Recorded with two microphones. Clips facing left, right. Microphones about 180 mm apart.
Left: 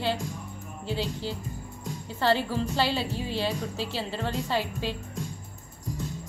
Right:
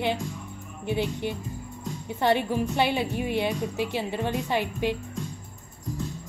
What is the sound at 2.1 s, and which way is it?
Music, 20° right (ahead or behind).